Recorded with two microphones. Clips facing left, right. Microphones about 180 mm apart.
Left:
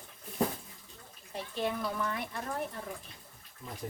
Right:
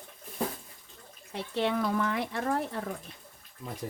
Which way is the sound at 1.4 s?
75° right (ahead or behind).